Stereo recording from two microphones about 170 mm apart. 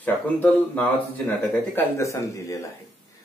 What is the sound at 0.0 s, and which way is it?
Speech, 10° left (ahead or behind).